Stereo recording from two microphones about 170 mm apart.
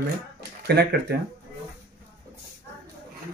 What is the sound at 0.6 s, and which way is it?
Speech, 75° right (ahead or behind).